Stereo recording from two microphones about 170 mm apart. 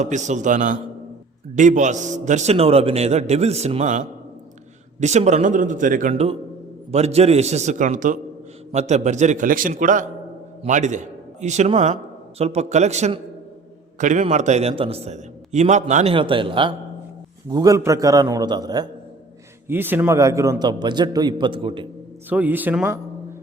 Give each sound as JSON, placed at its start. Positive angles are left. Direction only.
{"t": 0.0, "sound": "a man's voice", "side_deg": -45}
{"t": 16.1, "sound": "a man's voice", "side_deg": -30}
{"t": 19.6, "sound": "a man's voice", "side_deg": -10}
{"t": 22.3, "sound": "speech", "side_deg": -10}